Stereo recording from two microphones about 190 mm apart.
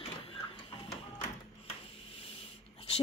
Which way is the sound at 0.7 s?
30° left (ahead or behind).